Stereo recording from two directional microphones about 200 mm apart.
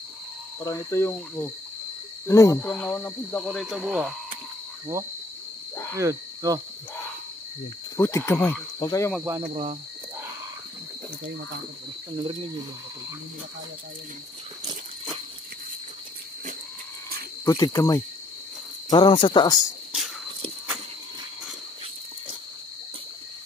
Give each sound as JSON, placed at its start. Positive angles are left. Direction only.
{"t": 0.7, "sound": "speech", "side_deg": 15}
{"t": 2.6, "sound": "speech", "side_deg": 5}
{"t": 3.4, "sound": "speech", "side_deg": -5}
{"t": 5.9, "sound": "speech", "side_deg": -15}
{"t": 8.0, "sound": "speech", "side_deg": 15}
{"t": 9.2, "sound": "speech", "side_deg": -15}
{"t": 9.5, "sound": "speech", "side_deg": -30}
{"t": 12.2, "sound": "speech", "side_deg": -25}
{"t": 17.5, "sound": "speech", "side_deg": 15}